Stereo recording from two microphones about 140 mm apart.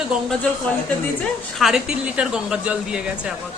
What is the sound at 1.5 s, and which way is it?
A woman's voice, 5° right (ahead or behind).